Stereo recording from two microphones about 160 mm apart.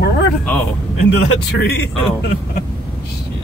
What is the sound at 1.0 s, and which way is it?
Speech, 90° left.